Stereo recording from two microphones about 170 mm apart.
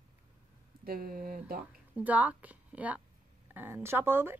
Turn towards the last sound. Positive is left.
turn(degrees=-10)  # may be behind; listen again after turning